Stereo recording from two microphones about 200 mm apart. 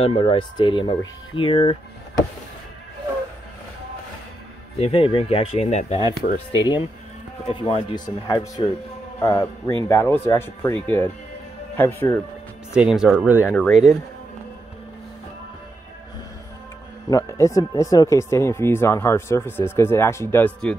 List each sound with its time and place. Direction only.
0.0 s speech: 30° left (ahead or behind)
4.7 s speech: 30° left (ahead or behind)
6.6 s speech: 20° left (ahead or behind)
12.7 s speech: 5° right (ahead or behind)
13.5 s speech: 5° left (ahead or behind)
17.1 s speech: 15° left (ahead or behind)